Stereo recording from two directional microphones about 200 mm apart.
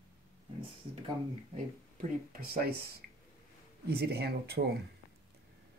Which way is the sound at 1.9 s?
45° right (ahead or behind).